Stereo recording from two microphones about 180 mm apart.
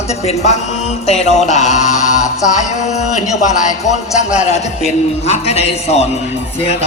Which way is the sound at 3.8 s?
40° left (ahead or behind).